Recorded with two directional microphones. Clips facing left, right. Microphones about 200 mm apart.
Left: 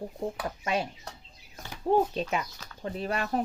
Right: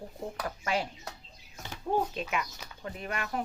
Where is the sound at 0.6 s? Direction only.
25° left (ahead or behind).